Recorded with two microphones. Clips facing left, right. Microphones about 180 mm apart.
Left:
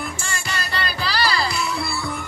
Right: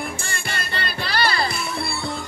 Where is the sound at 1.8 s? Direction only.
30° right (ahead or behind).